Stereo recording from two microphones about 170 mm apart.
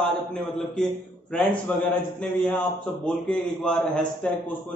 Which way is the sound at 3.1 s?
5° left (ahead or behind).